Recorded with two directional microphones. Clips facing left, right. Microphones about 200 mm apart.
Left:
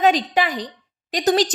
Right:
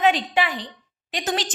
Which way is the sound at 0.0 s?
40° left (ahead or behind).